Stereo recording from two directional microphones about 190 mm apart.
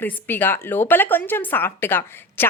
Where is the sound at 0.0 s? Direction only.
10° left (ahead or behind).